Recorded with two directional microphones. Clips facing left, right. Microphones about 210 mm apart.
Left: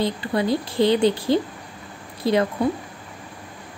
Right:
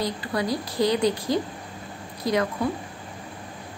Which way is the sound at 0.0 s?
25° left (ahead or behind).